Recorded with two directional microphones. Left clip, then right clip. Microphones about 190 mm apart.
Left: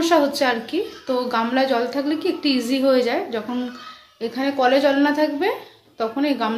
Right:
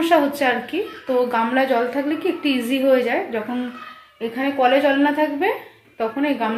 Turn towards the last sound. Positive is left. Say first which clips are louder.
# even
turn(degrees=5)  # may be behind; listen again after turning